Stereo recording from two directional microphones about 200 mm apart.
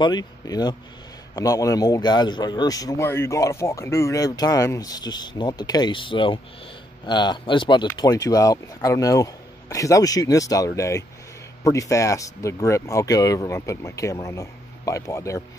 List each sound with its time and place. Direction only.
0.0 s a man's voice: 20° left (ahead or behind)